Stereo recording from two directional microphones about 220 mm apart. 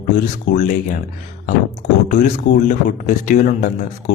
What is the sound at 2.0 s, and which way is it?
A man's voice, 35° left (ahead or behind).